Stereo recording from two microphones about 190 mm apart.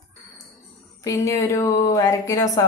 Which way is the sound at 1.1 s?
15° left (ahead or behind).